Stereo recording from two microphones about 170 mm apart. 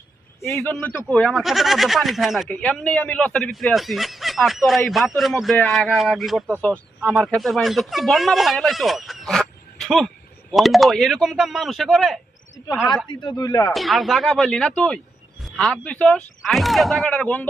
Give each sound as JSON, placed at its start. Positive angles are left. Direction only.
{"t": 0.3, "sound": "a man's voice", "side_deg": 15}
{"t": 13.1, "sound": "speech", "side_deg": 25}
{"t": 13.7, "sound": "speech", "side_deg": 0}